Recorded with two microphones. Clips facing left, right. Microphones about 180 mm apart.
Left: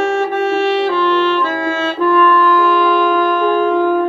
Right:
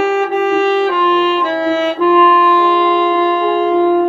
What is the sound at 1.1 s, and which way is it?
Music, 15° right (ahead or behind).